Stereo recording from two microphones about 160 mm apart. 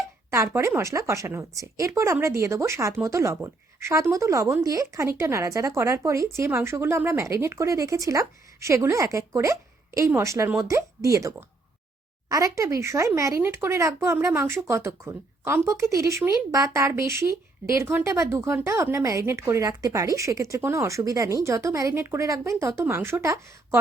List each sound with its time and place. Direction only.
0.3 s a woman's voice: 15° right (ahead or behind)